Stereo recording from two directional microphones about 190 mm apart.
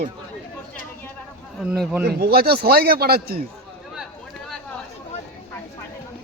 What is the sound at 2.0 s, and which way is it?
A man's voice, 55° right (ahead or behind).